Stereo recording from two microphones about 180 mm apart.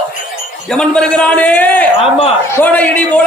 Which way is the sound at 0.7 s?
5° left (ahead or behind).